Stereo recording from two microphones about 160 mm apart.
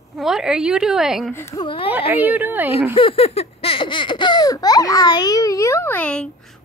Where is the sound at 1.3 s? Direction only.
15° left (ahead or behind).